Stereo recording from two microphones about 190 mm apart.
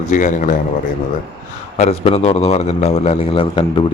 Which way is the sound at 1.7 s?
35° left (ahead or behind).